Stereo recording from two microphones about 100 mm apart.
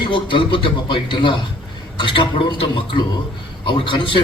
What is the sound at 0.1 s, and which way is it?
A man's voice, 55° left (ahead or behind).